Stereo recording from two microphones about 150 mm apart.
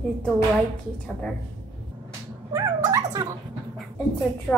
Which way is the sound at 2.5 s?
20° right (ahead or behind).